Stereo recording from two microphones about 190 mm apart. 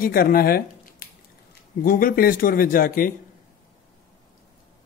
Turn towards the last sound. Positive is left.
turn(degrees=50)  # may be behind; listen again after turning